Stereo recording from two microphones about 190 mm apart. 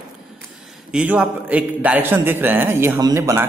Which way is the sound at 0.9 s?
5° right (ahead or behind).